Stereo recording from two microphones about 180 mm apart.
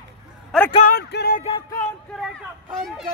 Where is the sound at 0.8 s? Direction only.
60° left (ahead or behind).